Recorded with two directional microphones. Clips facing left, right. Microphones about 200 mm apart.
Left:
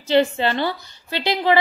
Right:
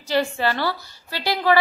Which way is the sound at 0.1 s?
25° left (ahead or behind).